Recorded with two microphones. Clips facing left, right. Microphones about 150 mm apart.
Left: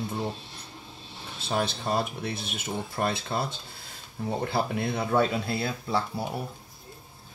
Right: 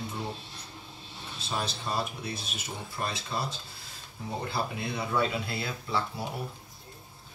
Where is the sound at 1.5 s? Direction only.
55° left (ahead or behind).